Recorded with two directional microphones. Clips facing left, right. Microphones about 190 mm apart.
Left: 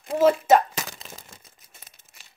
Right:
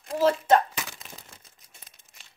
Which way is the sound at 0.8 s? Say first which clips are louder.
Left 3 dB; 40° left (ahead or behind).